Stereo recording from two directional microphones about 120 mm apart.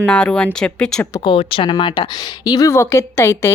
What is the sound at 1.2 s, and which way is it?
Speech, 45° left (ahead or behind).